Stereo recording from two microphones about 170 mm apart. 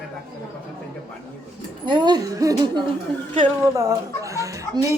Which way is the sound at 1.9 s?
25° right (ahead or behind).